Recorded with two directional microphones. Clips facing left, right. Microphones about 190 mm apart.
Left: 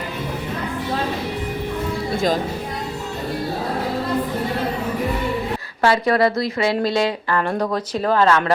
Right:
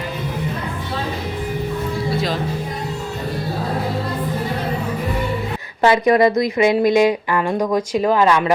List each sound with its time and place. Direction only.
5.8 s speech: 20° right (ahead or behind)